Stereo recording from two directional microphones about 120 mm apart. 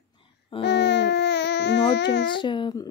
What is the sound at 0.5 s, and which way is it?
Speech, 45° left (ahead or behind).